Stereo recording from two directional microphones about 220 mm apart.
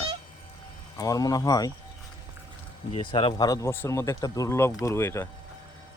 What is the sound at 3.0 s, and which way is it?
Speech, 20° left (ahead or behind).